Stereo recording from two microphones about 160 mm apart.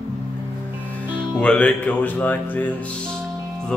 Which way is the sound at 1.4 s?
5° left (ahead or behind).